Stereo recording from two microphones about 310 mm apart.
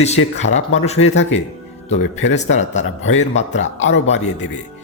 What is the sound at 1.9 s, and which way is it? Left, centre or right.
Speech, left.